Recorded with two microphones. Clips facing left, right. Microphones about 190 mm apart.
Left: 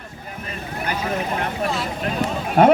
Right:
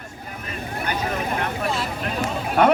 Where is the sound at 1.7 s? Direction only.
Centre (ahead or behind).